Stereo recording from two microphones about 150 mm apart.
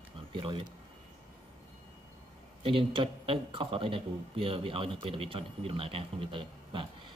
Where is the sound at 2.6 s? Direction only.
35° right (ahead or behind).